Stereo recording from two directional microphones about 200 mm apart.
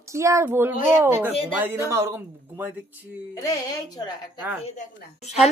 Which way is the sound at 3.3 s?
15° left (ahead or behind).